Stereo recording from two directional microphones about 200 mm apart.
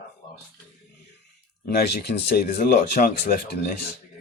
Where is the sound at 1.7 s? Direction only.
55° left (ahead or behind).